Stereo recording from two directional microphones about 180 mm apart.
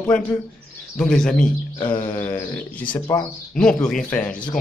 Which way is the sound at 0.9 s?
5° left (ahead or behind).